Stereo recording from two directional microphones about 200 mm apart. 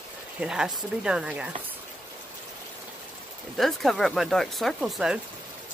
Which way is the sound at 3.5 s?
Centre (ahead or behind).